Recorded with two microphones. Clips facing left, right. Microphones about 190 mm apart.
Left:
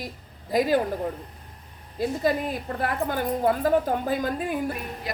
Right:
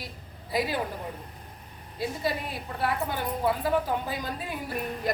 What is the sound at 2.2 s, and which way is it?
A woman's voice, 45° left (ahead or behind).